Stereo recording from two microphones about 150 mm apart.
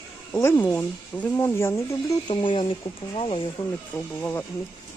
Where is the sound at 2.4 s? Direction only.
35° left (ahead or behind).